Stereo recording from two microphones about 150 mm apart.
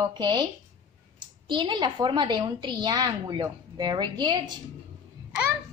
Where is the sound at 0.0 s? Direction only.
30° right (ahead or behind).